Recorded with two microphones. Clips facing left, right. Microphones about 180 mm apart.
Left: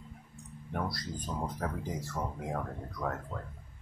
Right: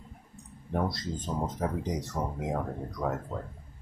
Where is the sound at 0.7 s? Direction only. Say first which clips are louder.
Right 5 dB; 25° right (ahead or behind).